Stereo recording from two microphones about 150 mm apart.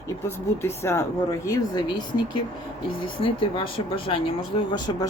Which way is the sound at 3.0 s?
35° left (ahead or behind).